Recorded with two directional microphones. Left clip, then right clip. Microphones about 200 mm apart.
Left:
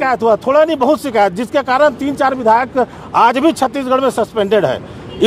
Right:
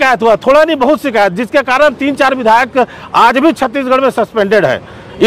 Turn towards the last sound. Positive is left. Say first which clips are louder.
# right 4 dB
turn(degrees=-20)  # may be behind; listen again after turning